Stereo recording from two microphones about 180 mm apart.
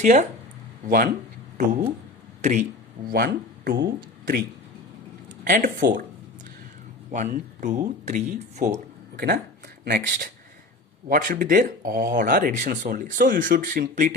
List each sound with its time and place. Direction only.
0.0 s speech: 40° right (ahead or behind)
0.9 s speech: 55° right (ahead or behind)
1.5 s speech: 40° right (ahead or behind)
3.1 s speech: 60° right (ahead or behind)
5.5 s speech: 50° right (ahead or behind)
7.1 s speech: 45° right (ahead or behind)
9.1 s speech: 70° right (ahead or behind)
11.1 s speech: 50° right (ahead or behind)